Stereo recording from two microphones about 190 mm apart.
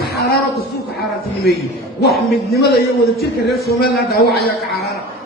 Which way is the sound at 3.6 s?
55° left (ahead or behind).